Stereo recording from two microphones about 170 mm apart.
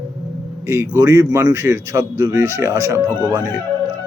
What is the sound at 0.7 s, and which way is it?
A man's voice, 20° right (ahead or behind).